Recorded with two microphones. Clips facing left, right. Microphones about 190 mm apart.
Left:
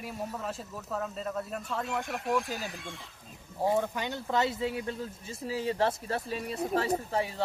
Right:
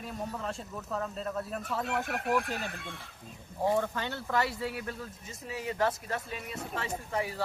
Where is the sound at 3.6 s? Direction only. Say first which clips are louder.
Left 1 dB; 10° left (ahead or behind).